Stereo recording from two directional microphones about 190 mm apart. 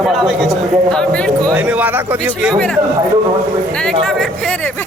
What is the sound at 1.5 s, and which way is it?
Speech, 5° right (ahead or behind).